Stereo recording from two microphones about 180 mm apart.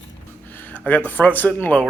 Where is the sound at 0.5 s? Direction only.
10° left (ahead or behind).